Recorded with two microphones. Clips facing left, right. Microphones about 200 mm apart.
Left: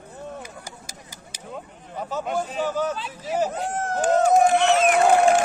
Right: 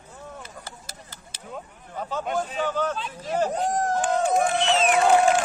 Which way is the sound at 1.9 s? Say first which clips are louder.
Left 1 dB; 5° left (ahead or behind).